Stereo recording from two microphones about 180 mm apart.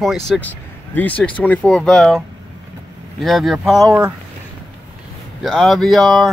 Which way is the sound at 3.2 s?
Centre (ahead or behind).